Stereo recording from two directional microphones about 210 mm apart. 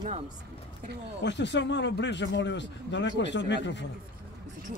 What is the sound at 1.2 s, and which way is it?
Speech, 55° left (ahead or behind).